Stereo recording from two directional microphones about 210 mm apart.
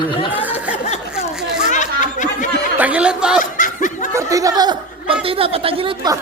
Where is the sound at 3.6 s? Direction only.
40° left (ahead or behind).